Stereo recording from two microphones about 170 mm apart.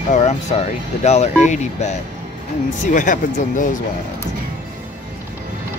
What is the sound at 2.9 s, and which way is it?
Speech, 50° left (ahead or behind).